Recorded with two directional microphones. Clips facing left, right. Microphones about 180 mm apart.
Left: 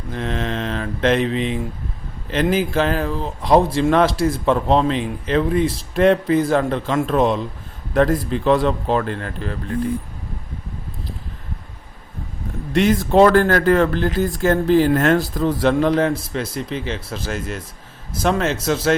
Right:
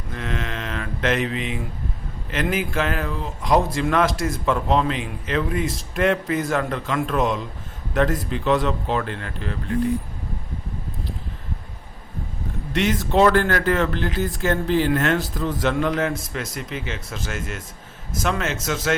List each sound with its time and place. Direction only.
0.1 s mantra: 30° left (ahead or behind)
2.3 s speech: 30° left (ahead or behind)
12.7 s speech: 40° left (ahead or behind)